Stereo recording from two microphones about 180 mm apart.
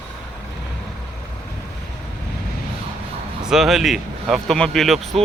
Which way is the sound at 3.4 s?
5° right (ahead or behind).